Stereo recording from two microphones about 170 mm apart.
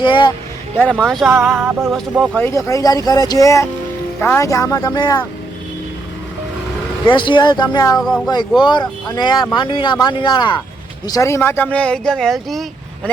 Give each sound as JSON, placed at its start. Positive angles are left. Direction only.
{"t": 0.0, "sound": "speech", "side_deg": 30}
{"t": 0.8, "sound": "speech", "side_deg": 5}
{"t": 1.5, "sound": "music", "side_deg": -15}
{"t": 1.9, "sound": "speech", "side_deg": 0}
{"t": 2.3, "sound": "speech", "side_deg": 15}
{"t": 7.1, "sound": "speech", "side_deg": 30}